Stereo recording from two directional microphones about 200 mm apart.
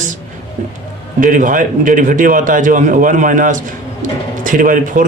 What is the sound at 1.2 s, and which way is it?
A man's voice, 40° right (ahead or behind).